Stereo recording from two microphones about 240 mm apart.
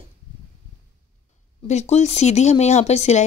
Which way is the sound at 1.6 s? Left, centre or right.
Left.